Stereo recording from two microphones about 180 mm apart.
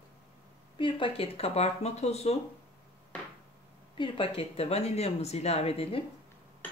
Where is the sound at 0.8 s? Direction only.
30° left (ahead or behind).